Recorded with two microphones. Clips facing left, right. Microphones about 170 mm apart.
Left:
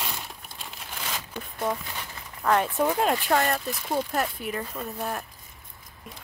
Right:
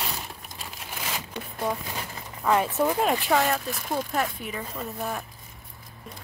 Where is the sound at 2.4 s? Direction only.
5° right (ahead or behind).